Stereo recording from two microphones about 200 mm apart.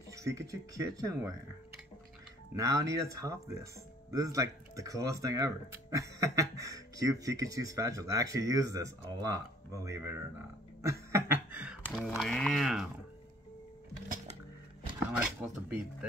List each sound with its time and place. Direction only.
0.1 s speech: 15° right (ahead or behind)
2.5 s speech: 15° right (ahead or behind)
10.8 s a sound: 15° right (ahead or behind)
12.2 s speech: 5° left (ahead or behind)
15.2 s speech: 5° right (ahead or behind)